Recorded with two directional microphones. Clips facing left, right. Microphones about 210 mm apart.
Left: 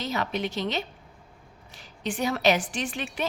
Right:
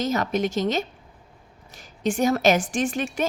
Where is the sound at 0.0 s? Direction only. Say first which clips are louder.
Right 6 dB; 45° right (ahead or behind).